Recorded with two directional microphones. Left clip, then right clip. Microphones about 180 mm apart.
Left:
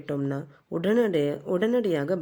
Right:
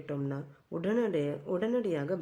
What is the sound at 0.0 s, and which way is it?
Speech, 35° left (ahead or behind).